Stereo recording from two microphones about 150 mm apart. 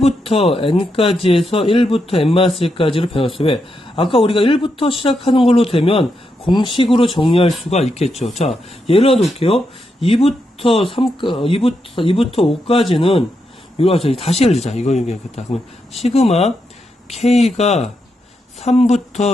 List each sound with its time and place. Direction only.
0.0 s speech: 40° left (ahead or behind)